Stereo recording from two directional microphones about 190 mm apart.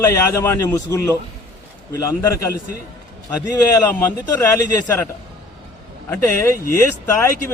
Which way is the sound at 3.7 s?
15° left (ahead or behind).